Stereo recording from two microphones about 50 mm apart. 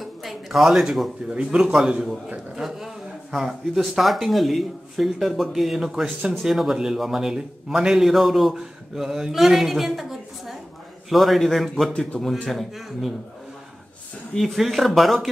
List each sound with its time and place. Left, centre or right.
0.0 s a sound: centre
1.3 s a man's voice: centre
2.6 s a man's voice: centre
12.1 s speech: centre
12.4 s speech: centre
14.3 s speech: centre